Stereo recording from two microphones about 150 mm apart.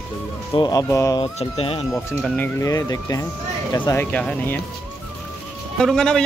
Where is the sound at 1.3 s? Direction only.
40° left (ahead or behind).